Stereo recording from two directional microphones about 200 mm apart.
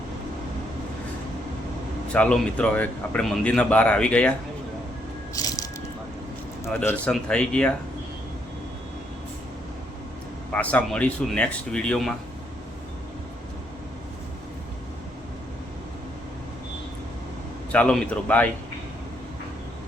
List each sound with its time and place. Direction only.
2.1 s speech: 5° left (ahead or behind)
5.3 s a sound: 15° left (ahead or behind)
6.7 s speech: 5° left (ahead or behind)
10.5 s speech: 5° left (ahead or behind)
17.7 s speech: 5° left (ahead or behind)